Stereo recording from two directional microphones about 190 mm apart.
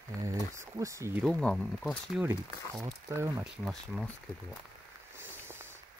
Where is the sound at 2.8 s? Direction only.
15° right (ahead or behind).